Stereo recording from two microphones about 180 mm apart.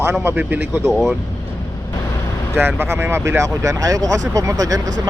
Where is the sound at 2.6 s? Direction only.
15° right (ahead or behind).